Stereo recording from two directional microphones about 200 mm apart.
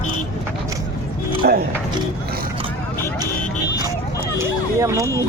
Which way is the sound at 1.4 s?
50° right (ahead or behind).